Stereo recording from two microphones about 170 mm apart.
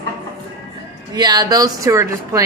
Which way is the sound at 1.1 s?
25° right (ahead or behind).